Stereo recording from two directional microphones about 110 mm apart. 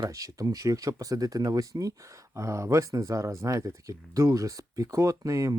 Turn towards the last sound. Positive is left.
turn(degrees=-30)  # may be behind; listen again after turning